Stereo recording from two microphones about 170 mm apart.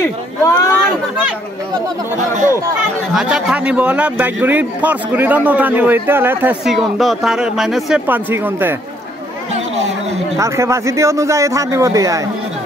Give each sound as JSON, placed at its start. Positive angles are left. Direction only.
{"t": 0.0, "sound": "a sound", "side_deg": 15}
{"t": 3.1, "sound": "a man's voice", "side_deg": -5}
{"t": 6.6, "sound": "speech", "side_deg": 0}
{"t": 10.4, "sound": "a man's voice", "side_deg": -15}